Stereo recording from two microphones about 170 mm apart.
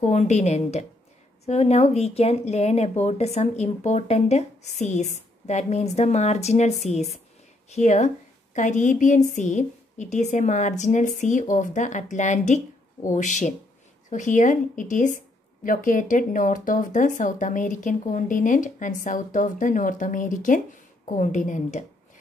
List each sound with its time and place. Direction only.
0.0 s a woman's voice: 45° left (ahead or behind)